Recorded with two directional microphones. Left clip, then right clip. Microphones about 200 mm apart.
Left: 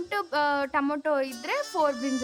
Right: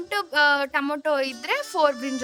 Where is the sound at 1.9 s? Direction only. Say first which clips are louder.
Even; 5° right (ahead or behind).